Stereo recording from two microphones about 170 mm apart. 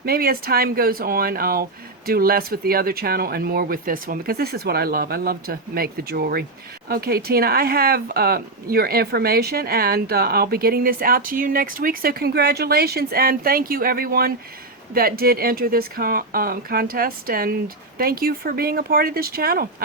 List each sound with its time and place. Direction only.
0.0 s speech: 60° right (ahead or behind)